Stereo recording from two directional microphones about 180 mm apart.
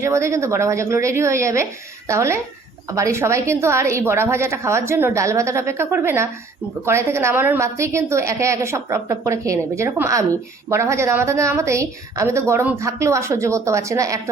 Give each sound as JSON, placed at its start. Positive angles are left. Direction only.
{"t": 0.0, "sound": "a woman's voice", "side_deg": -15}